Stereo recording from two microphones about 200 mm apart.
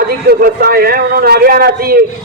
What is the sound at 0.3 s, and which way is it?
A man's voice, 50° right (ahead or behind).